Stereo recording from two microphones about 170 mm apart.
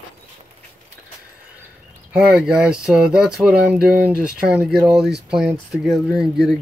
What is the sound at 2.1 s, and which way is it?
Speech, 5° right (ahead or behind).